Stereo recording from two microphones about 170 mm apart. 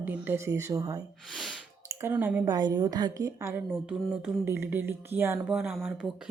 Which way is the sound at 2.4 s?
25° right (ahead or behind).